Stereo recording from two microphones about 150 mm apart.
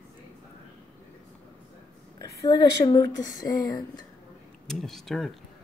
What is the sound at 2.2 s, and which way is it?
Speech, 25° left (ahead or behind).